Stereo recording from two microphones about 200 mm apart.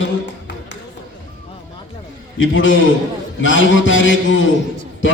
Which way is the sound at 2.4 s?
75° left (ahead or behind).